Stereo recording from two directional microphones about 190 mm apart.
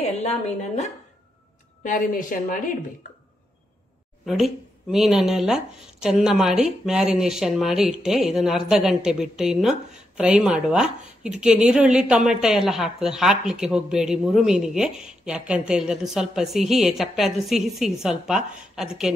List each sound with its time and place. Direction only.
0.0 s a woman's voice: 35° left (ahead or behind)
1.8 s a woman's voice: 45° left (ahead or behind)
4.9 s speech: 5° right (ahead or behind)